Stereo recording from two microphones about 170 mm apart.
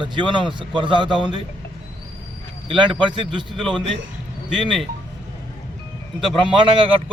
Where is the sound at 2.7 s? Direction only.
30° right (ahead or behind).